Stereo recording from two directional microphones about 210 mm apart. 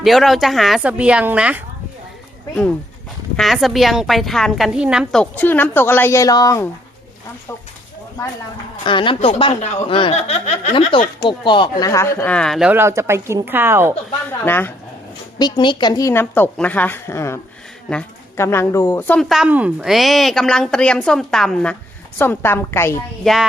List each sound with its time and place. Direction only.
0.0 s a woman's voice: centre (ahead or behind)
3.3 s a woman's voice: centre (ahead or behind); by 6.7 s 15° left (ahead or behind)
8.8 s speech: 25° left (ahead or behind); by 13.9 s 10° right (ahead or behind)
14.3 s a woman's voice: 10° left (ahead or behind)
23.2 s a woman's voice: centre (ahead or behind)